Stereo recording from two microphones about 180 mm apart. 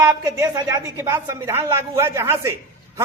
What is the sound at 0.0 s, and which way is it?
A woman's voice, 10° right (ahead or behind).